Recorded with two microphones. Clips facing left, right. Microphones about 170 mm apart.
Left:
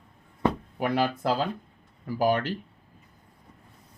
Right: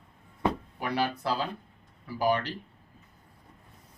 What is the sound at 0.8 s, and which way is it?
Speech, 50° left (ahead or behind).